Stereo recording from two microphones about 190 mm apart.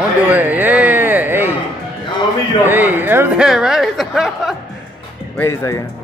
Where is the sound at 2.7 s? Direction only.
10° right (ahead or behind).